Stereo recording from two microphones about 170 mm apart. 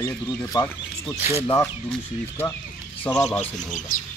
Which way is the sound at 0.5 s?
20° left (ahead or behind).